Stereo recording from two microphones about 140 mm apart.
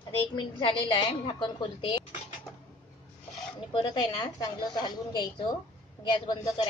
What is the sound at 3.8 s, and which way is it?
A woman's voice, 30° left (ahead or behind).